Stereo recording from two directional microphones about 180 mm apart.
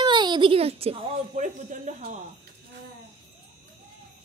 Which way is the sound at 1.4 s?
45° right (ahead or behind).